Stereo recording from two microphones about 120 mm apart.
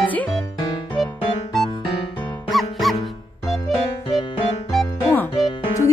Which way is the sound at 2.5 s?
Centre (ahead or behind).